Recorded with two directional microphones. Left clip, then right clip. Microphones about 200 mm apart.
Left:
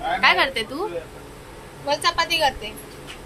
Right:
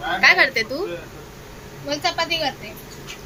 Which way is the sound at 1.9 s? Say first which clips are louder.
Left 2 dB; 35° left (ahead or behind).